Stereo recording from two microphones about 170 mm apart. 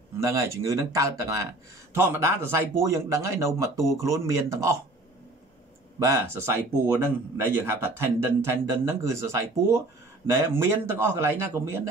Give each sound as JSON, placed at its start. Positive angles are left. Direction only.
{"t": 0.2, "sound": "a man's voice", "side_deg": -20}
{"t": 6.0, "sound": "a man's voice", "side_deg": -15}